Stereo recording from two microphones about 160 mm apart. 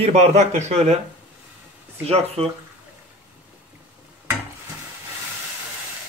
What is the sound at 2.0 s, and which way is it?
Speech, 40° right (ahead or behind).